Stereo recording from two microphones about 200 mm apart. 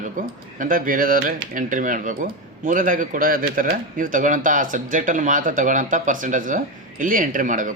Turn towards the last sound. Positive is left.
turn(degrees=-40)  # may be behind; listen again after turning